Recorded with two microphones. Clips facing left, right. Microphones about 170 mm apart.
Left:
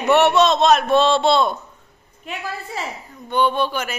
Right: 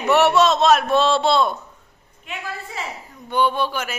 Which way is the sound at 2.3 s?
35° left (ahead or behind).